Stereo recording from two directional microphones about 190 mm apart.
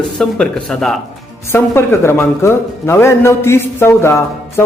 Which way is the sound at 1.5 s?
10° left (ahead or behind).